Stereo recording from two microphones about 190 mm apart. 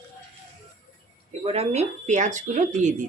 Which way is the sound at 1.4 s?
30° right (ahead or behind).